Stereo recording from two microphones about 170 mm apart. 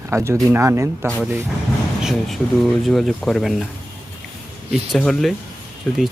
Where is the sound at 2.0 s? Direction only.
Centre (ahead or behind).